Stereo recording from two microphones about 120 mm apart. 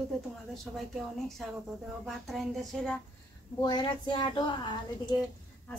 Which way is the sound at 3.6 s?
40° left (ahead or behind).